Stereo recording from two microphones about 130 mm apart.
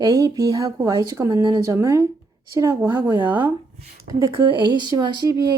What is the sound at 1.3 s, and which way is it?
Speech, 35° right (ahead or behind).